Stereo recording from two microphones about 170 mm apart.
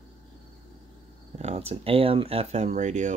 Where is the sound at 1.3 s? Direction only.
40° right (ahead or behind).